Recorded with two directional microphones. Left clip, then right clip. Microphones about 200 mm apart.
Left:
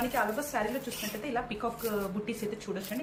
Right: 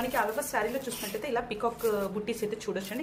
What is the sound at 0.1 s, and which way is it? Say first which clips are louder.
A woman's voice: right 2 dB; 55° right (ahead or behind).